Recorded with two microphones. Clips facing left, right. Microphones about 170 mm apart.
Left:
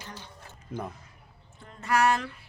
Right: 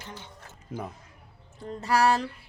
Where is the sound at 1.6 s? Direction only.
35° right (ahead or behind).